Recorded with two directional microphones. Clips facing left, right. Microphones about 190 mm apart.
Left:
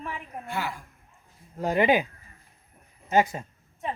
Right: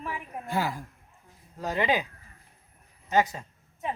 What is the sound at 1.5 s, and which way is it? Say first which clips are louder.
Speech: left 5 dB; 20° left (ahead or behind).